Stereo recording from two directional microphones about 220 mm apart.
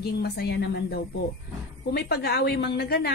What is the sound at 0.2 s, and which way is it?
A woman's voice, 50° left (ahead or behind).